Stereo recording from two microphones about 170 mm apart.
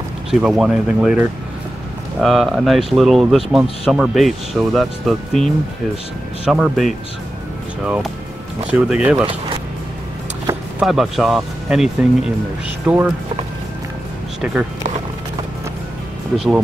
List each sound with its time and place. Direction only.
0.3 s speech: 5° right (ahead or behind)
10.8 s speech: centre (ahead or behind)
14.4 s speech: 5° right (ahead or behind)